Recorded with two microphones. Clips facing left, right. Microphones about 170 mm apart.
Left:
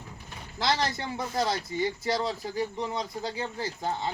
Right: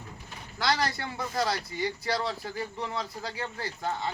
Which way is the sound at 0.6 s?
20° left (ahead or behind).